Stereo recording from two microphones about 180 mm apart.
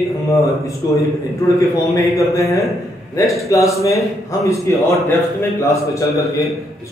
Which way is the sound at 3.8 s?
15° left (ahead or behind).